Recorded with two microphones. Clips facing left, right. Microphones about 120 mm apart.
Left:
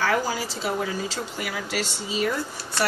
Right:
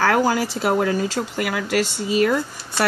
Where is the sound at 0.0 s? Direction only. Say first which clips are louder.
Right 6 dB; 65° right (ahead or behind).